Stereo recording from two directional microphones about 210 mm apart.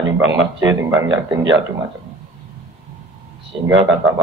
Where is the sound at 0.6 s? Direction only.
20° right (ahead or behind).